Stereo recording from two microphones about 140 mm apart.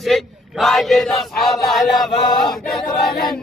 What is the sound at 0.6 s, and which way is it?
Chant, centre (ahead or behind).